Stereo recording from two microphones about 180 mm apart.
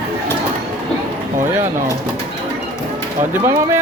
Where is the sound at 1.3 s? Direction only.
15° right (ahead or behind).